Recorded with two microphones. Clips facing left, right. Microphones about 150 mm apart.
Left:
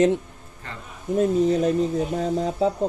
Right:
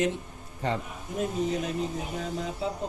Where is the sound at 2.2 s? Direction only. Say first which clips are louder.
Left 7 dB; 35° left (ahead or behind).